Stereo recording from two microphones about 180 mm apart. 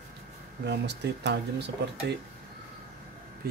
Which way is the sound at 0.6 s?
70° right (ahead or behind).